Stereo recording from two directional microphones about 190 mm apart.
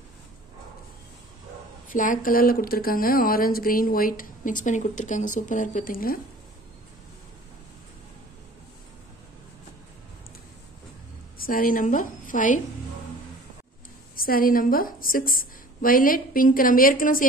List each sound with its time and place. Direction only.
1.9 s speech: 45° left (ahead or behind)
11.3 s a woman's voice: 50° left (ahead or behind)
14.1 s speech: 50° left (ahead or behind)